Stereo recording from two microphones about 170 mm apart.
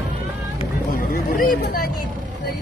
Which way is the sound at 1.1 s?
60° left (ahead or behind).